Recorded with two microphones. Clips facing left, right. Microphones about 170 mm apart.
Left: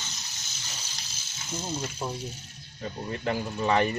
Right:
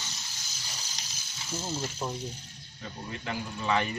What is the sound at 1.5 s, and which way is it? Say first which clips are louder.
Speech: left 1 dB; 20° left (ahead or behind).